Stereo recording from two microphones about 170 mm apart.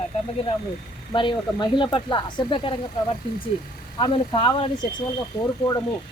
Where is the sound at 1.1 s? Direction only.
30° left (ahead or behind).